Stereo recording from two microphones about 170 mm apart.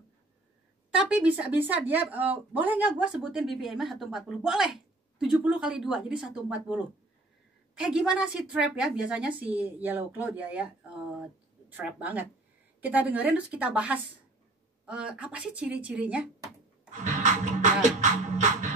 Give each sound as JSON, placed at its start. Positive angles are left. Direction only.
{"t": 0.9, "sound": "a woman's voice", "side_deg": -5}
{"t": 11.7, "sound": "a woman's voice", "side_deg": -10}
{"t": 16.9, "sound": "music", "side_deg": -45}